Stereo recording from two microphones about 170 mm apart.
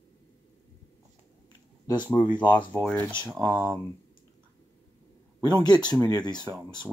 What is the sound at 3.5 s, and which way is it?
Speech, 15° right (ahead or behind).